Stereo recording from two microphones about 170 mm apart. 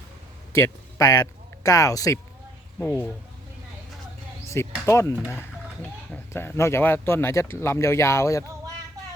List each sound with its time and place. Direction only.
0.5 s a man's voice: 15° left (ahead or behind)
4.4 s insect: 15° left (ahead or behind)
4.9 s speech: 15° left (ahead or behind)